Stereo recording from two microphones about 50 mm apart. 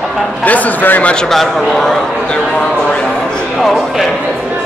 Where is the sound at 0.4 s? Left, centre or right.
Left.